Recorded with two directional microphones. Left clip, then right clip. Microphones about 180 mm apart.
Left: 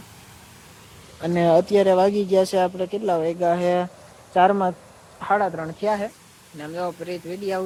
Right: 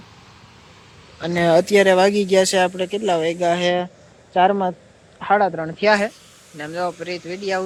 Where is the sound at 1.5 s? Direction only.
Centre (ahead or behind).